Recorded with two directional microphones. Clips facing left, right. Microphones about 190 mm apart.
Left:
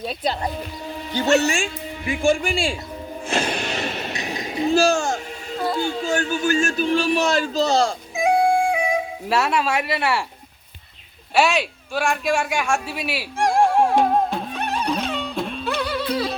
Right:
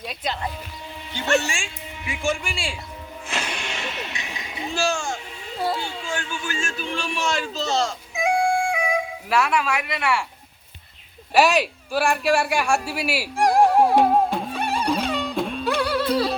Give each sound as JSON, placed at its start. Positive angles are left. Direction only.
{"t": 0.0, "sound": "a man's voice", "side_deg": 35}
{"t": 3.2, "sound": "a sound", "side_deg": 35}
{"t": 5.9, "sound": "speech", "side_deg": 40}
{"t": 11.3, "sound": "a man's voice", "side_deg": -5}
{"t": 13.9, "sound": "music", "side_deg": -5}